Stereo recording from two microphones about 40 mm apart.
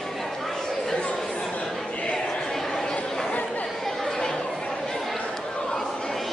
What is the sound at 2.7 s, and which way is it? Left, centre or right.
Chatter, centre.